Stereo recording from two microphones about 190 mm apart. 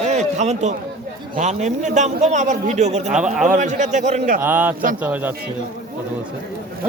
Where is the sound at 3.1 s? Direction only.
5° right (ahead or behind).